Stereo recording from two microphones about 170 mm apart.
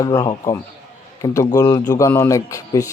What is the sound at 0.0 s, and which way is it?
A man's voice, 20° left (ahead or behind).